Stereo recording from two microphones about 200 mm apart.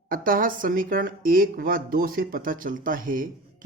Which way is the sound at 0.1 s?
45° right (ahead or behind).